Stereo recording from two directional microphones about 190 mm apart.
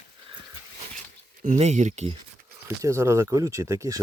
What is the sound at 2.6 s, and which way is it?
Speech, 15° right (ahead or behind).